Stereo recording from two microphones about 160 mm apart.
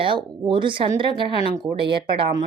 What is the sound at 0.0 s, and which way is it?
Speech, 30° right (ahead or behind).